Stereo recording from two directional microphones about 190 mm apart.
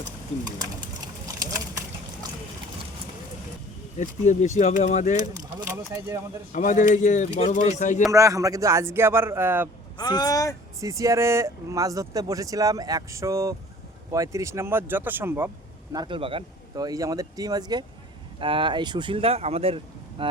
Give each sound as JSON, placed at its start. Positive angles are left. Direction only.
{"t": 0.6, "sound": "a sound", "side_deg": -20}
{"t": 3.9, "sound": "speech", "side_deg": 40}
{"t": 5.6, "sound": "speech", "side_deg": -10}
{"t": 6.5, "sound": "speech", "side_deg": 45}
{"t": 8.1, "sound": "speech", "side_deg": -15}
{"t": 10.0, "sound": "speech", "side_deg": 20}
{"t": 10.8, "sound": "speech", "side_deg": -15}
{"t": 15.9, "sound": "speech", "side_deg": -25}